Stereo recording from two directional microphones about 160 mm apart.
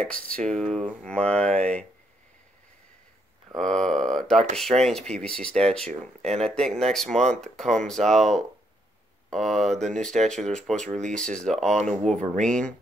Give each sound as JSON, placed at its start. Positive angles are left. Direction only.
{"t": 0.0, "sound": "speech", "side_deg": 5}
{"t": 3.5, "sound": "speech", "side_deg": 5}
{"t": 5.9, "sound": "speech", "side_deg": -45}
{"t": 6.4, "sound": "speech", "side_deg": 0}
{"t": 9.3, "sound": "speech", "side_deg": 0}
{"t": 10.9, "sound": "speech", "side_deg": -45}
{"t": 11.1, "sound": "speech", "side_deg": 5}